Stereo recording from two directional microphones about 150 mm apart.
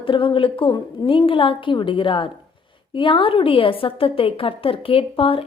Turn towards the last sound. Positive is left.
turn(degrees=35)  # may be behind; listen again after turning